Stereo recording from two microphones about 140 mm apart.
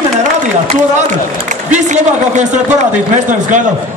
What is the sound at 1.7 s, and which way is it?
A man's voice, 60° right (ahead or behind).